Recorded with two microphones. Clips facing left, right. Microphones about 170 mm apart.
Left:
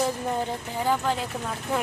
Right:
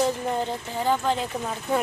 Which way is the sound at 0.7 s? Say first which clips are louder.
Right 1 dB; 10° left (ahead or behind).